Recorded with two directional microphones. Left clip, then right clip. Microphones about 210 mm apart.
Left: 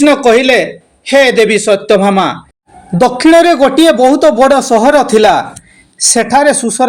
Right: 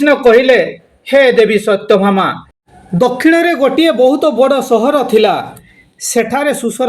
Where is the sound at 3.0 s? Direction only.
10° left (ahead or behind).